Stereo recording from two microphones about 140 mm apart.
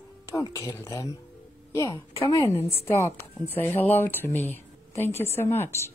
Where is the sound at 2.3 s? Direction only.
20° left (ahead or behind).